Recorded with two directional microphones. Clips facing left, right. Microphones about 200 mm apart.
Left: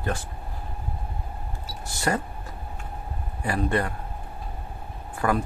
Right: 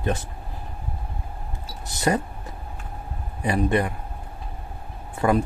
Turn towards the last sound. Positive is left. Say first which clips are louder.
# right 4 dB
turn(degrees=-25)  # may be behind; listen again after turning